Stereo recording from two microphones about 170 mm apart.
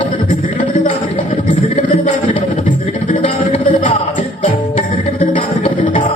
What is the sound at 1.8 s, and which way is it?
Music, 40° left (ahead or behind).